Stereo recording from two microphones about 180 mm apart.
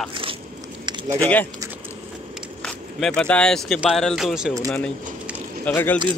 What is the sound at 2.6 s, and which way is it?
Speech, 5° left (ahead or behind).